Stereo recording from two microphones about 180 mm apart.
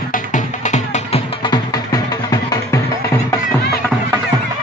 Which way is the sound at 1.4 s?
20° left (ahead or behind).